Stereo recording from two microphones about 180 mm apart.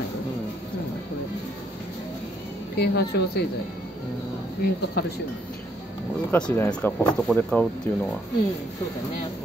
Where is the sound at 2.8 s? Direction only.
65° left (ahead or behind).